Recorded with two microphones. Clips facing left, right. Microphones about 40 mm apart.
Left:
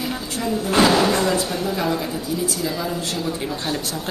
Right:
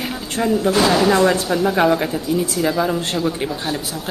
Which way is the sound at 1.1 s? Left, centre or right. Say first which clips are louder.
Right 5 dB; right.